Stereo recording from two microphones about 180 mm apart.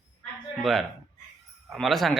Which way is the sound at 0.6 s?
Centre (ahead or behind).